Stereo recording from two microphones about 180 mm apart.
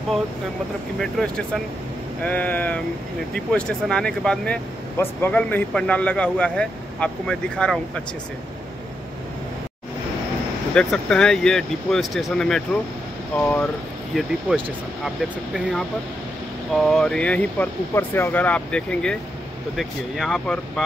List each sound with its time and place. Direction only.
0.9 s speech: 5° left (ahead or behind)
10.7 s speech: 5° left (ahead or behind)